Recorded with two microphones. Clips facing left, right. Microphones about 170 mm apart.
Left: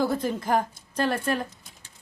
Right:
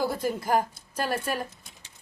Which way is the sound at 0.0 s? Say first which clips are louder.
Left 2 dB; 10° right (ahead or behind).